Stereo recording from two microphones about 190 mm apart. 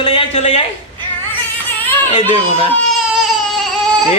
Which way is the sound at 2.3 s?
30° left (ahead or behind).